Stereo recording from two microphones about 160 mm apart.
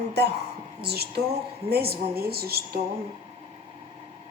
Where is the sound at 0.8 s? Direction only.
90° right.